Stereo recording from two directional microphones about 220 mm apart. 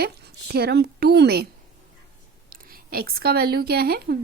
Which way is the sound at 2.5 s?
40° right (ahead or behind).